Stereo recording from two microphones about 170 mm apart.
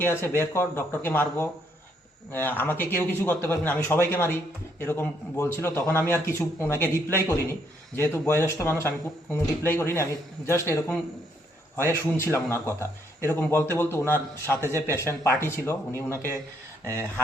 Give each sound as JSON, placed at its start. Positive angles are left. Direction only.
{"t": 0.0, "sound": "a man's voice", "side_deg": 15}
{"t": 14.6, "sound": "a man's voice", "side_deg": -15}
{"t": 14.9, "sound": "a man's voice", "side_deg": 15}